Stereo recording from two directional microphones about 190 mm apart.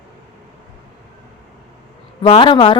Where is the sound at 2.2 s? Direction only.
30° left (ahead or behind).